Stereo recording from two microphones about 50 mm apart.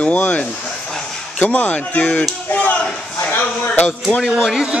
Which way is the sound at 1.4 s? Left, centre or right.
Left.